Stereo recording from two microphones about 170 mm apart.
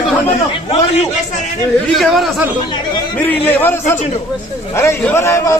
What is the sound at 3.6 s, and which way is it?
A man's voice, 15° left (ahead or behind).